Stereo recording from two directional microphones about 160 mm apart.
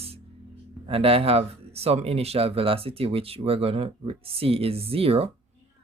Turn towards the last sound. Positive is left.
turn(degrees=-35)  # may be behind; listen again after turning